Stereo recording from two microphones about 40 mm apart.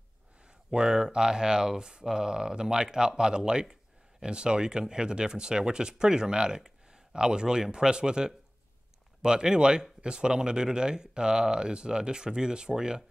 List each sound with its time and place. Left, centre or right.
0.7 s speech: centre